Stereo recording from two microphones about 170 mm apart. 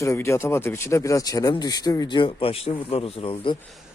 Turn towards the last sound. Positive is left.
turn(degrees=30)  # may be behind; listen again after turning